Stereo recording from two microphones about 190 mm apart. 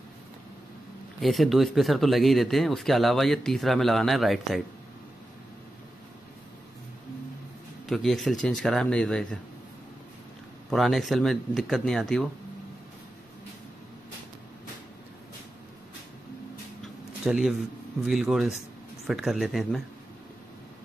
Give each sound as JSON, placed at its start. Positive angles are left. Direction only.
{"t": 1.2, "sound": "speech", "side_deg": 0}
{"t": 7.8, "sound": "speech", "side_deg": 0}
{"t": 10.7, "sound": "speech", "side_deg": 0}
{"t": 17.2, "sound": "a man's voice", "side_deg": 0}